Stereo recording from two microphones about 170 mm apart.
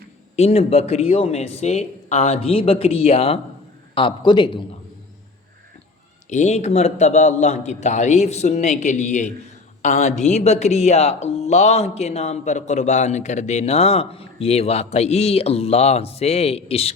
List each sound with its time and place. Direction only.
0.3 s a man's voice: 40° left (ahead or behind)
6.3 s speech: 45° left (ahead or behind)